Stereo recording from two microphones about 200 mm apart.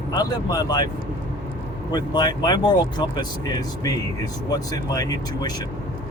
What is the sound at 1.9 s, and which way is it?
Speech, 20° left (ahead or behind).